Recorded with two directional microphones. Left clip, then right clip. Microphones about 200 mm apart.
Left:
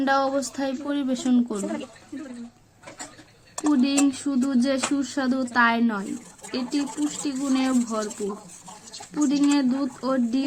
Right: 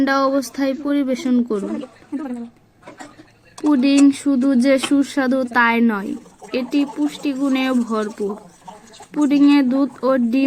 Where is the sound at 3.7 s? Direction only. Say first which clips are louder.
Right 9 dB; 30° right (ahead or behind).